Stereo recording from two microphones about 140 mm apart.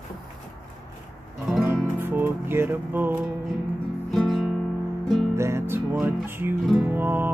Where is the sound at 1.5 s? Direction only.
15° right (ahead or behind).